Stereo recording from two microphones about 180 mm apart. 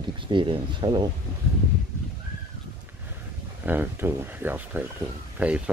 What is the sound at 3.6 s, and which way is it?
Speech, 10° right (ahead or behind).